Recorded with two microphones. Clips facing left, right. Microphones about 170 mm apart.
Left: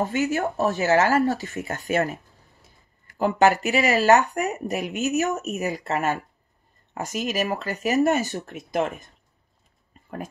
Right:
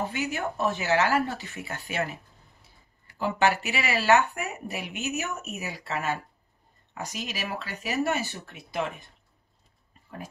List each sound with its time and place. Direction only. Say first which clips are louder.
0.0 s speech: left 6 dB; 45° left (ahead or behind)